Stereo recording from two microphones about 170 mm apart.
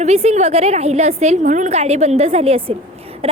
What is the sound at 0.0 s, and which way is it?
A woman's voice, 40° right (ahead or behind).